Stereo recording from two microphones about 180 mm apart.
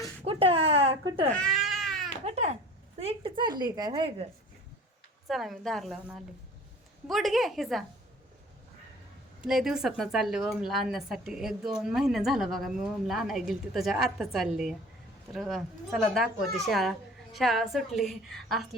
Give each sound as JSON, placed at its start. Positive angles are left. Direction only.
{"t": 0.3, "sound": "a sound", "side_deg": -30}
{"t": 1.3, "sound": "baby cry", "side_deg": 5}
{"t": 2.2, "sound": "a child's voice", "side_deg": -40}
{"t": 5.3, "sound": "a woman's voice", "side_deg": 0}
{"t": 9.4, "sound": "a woman's voice", "side_deg": -5}